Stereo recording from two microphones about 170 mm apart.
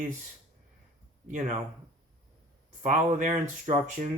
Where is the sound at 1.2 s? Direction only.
45° right (ahead or behind).